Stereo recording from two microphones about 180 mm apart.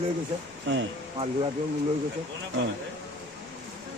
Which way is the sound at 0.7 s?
90° right.